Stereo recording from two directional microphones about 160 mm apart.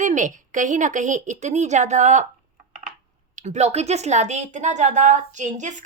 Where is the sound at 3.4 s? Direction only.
45° right (ahead or behind).